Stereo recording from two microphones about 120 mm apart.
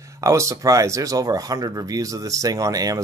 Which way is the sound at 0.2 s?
25° right (ahead or behind).